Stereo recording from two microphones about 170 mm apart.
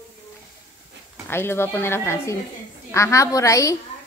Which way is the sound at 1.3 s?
15° left (ahead or behind).